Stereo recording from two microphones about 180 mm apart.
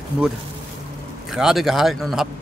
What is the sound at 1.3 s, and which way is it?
Speech, centre (ahead or behind).